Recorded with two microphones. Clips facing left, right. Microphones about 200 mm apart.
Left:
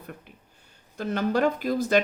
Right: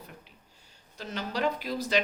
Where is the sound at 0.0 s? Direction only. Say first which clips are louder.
Left 6 dB; 55° left (ahead or behind).